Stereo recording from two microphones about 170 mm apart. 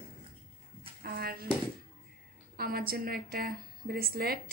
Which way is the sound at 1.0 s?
60° right (ahead or behind).